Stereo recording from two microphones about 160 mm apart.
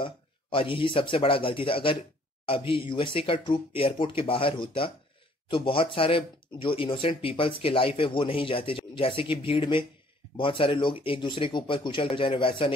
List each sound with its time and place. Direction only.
0.0 s speech: 35° left (ahead or behind)